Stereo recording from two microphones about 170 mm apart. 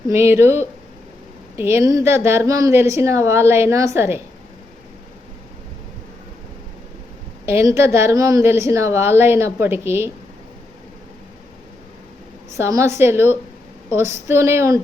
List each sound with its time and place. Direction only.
0.1 s a woman's voice: 15° right (ahead or behind)
7.4 s a woman's voice: 15° right (ahead or behind)
12.5 s a woman's voice: 15° right (ahead or behind)